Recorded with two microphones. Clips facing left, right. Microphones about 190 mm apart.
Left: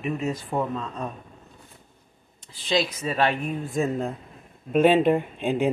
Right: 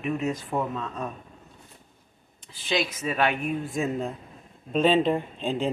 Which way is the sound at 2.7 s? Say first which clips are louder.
Left 2 dB; 30° left (ahead or behind).